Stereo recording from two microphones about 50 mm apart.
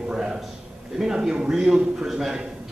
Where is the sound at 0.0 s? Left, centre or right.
Centre.